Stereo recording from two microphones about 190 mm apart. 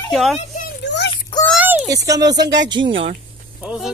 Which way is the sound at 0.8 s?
65° left (ahead or behind).